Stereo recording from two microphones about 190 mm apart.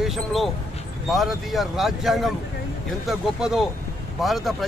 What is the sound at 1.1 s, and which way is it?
Speech, centre (ahead or behind).